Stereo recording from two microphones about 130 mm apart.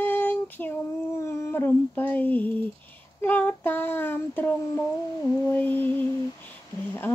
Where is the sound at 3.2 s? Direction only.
15° left (ahead or behind).